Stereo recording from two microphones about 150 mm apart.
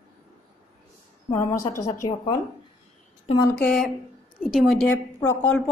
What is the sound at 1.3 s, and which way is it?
Speech, 20° left (ahead or behind).